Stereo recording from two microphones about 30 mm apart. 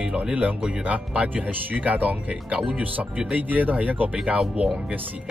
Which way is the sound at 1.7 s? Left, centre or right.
Right.